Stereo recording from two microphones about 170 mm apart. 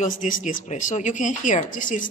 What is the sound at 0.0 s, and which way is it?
Speech, 50° left (ahead or behind).